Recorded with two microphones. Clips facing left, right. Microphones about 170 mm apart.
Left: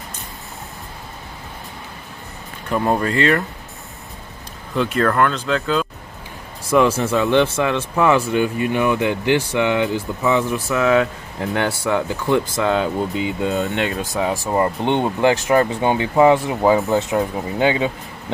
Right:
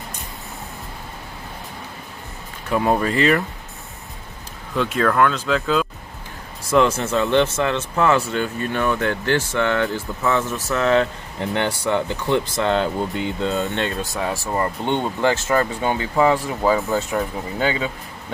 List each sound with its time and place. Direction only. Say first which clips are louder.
2.7 s speech: even; 5° right (ahead or behind)
4.7 s speech: left 1 dB; centre (ahead or behind)
6.7 s speech: left 2 dB; 10° left (ahead or behind)